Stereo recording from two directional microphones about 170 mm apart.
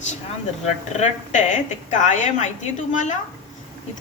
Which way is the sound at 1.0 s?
45° left (ahead or behind).